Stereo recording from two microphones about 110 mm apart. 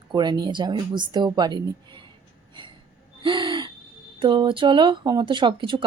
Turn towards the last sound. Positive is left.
turn(degrees=-50)  # may be behind; listen again after turning